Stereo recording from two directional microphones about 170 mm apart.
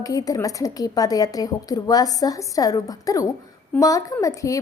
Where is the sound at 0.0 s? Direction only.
20° left (ahead or behind).